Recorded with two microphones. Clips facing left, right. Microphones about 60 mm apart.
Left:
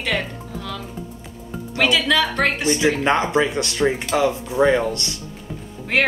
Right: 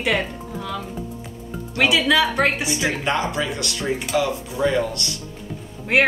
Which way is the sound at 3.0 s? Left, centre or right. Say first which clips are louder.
Left 4 dB; left.